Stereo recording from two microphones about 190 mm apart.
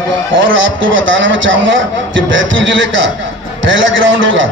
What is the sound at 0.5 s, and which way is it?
A man's voice, 90° right.